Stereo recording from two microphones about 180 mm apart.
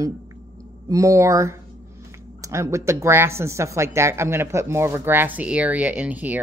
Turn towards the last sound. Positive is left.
turn(degrees=-10)  # may be behind; listen again after turning